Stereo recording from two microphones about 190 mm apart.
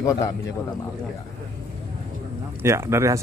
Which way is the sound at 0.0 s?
20° left (ahead or behind).